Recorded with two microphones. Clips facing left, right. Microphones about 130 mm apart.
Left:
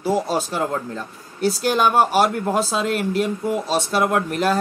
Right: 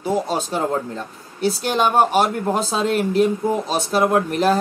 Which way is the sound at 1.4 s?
Centre (ahead or behind).